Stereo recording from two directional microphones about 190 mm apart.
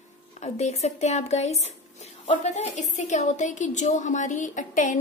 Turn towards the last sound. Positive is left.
turn(degrees=40)  # may be behind; listen again after turning